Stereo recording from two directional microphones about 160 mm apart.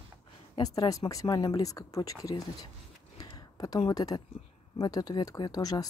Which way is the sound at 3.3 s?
25° left (ahead or behind).